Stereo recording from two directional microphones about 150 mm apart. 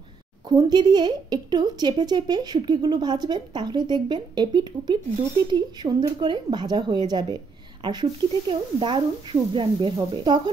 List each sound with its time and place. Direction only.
0.5 s a woman's voice: 25° right (ahead or behind)